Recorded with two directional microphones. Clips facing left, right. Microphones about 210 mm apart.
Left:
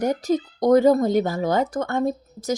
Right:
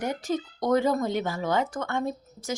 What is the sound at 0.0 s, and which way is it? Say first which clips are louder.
Speech: left 7 dB; 40° left (ahead or behind).